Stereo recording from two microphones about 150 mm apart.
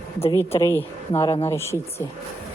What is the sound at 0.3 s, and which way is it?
Speech, 20° left (ahead or behind).